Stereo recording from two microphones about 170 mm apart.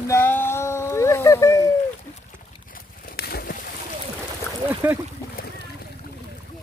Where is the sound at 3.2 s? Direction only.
65° left (ahead or behind).